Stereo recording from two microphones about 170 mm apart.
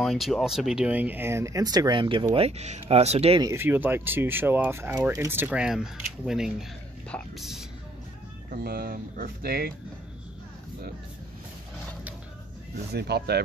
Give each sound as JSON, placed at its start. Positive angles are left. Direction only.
{"t": 0.0, "sound": "speech", "side_deg": 0}
{"t": 3.3, "sound": "speech", "side_deg": -15}
{"t": 8.5, "sound": "speech", "side_deg": -60}
{"t": 12.9, "sound": "speech", "side_deg": -70}